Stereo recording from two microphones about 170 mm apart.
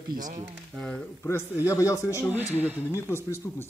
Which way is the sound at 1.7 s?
20° left (ahead or behind).